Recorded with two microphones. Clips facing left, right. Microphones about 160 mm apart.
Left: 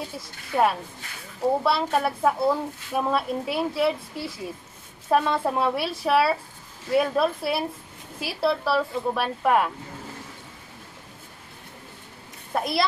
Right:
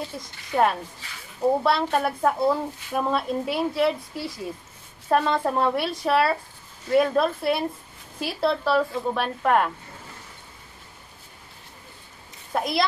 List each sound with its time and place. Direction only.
0.2 s speech: 5° left (ahead or behind)
12.5 s speech: centre (ahead or behind)